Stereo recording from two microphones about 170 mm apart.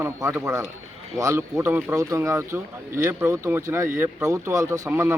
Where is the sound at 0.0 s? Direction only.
15° right (ahead or behind).